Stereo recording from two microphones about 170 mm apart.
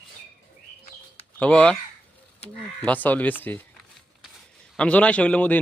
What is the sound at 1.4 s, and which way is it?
Speech, 5° left (ahead or behind).